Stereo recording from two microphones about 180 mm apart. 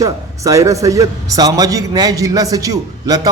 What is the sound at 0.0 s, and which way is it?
A man's voice, 20° right (ahead or behind).